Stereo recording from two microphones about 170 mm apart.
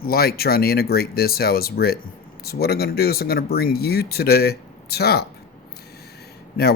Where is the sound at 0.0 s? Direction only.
65° left (ahead or behind).